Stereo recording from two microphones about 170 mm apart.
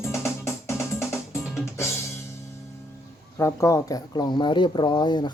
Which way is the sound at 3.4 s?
20° left (ahead or behind).